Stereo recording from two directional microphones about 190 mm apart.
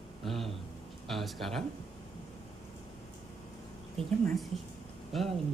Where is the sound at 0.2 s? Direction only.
Centre (ahead or behind).